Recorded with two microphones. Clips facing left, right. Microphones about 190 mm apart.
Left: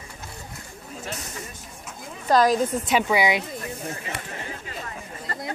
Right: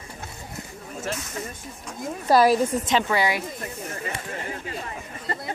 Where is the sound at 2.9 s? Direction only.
10° left (ahead or behind).